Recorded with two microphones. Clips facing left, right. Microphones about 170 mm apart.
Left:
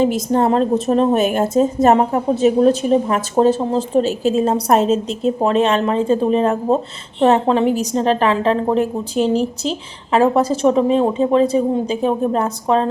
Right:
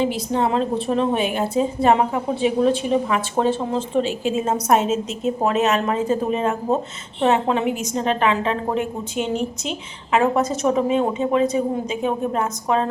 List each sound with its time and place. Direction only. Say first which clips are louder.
0.0 s a woman's voice: left 5 dB; 45° left (ahead or behind)